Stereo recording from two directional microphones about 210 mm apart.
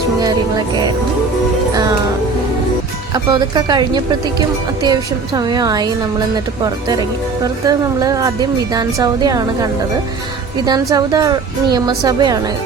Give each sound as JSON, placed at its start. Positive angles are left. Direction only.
{"t": 3.2, "sound": "speech", "side_deg": -20}
{"t": 10.7, "sound": "speech", "side_deg": -15}